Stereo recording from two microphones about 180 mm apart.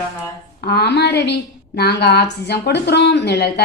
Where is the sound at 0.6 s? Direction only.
65° left (ahead or behind).